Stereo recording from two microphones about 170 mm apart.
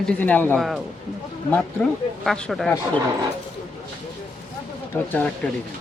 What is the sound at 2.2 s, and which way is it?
Speech, centre (ahead or behind).